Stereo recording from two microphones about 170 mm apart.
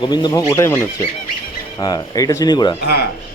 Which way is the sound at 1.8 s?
20° left (ahead or behind).